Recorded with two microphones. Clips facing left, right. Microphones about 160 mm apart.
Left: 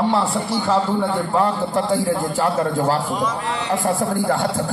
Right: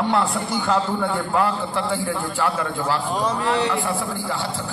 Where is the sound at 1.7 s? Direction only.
40° left (ahead or behind).